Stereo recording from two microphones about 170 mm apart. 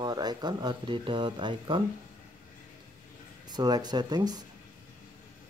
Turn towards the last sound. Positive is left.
turn(degrees=-25)  # may be behind; listen again after turning